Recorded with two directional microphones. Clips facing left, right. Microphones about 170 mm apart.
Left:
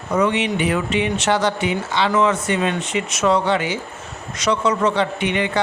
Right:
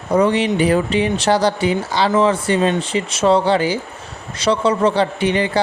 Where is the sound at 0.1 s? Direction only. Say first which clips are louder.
Right 4 dB; 35° right (ahead or behind).